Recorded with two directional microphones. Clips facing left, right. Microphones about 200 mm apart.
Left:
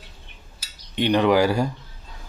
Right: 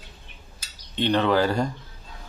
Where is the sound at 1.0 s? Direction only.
15° left (ahead or behind).